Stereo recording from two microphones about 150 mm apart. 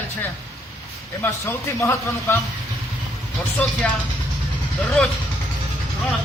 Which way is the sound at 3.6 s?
10° left (ahead or behind).